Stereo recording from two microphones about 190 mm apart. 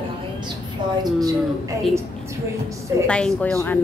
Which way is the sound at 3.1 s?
5° left (ahead or behind).